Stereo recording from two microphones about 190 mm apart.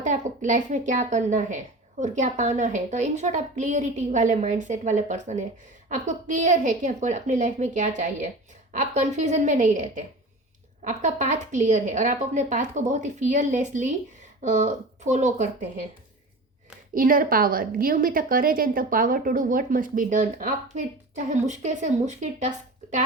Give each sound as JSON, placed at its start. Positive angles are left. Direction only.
{"t": 0.0, "sound": "speech", "side_deg": -40}
{"t": 16.9, "sound": "a woman's voice", "side_deg": -45}